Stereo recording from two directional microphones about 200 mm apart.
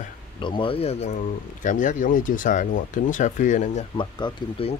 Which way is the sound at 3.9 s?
25° left (ahead or behind).